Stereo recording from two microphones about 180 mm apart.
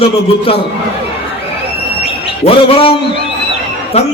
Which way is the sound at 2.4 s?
30° left (ahead or behind).